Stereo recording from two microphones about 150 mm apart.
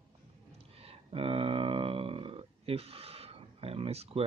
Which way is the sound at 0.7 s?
40° right (ahead or behind).